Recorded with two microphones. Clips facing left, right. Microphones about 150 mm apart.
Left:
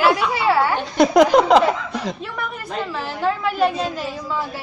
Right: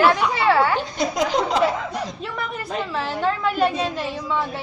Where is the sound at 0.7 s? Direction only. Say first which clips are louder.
Left 9 dB; 65° left (ahead or behind).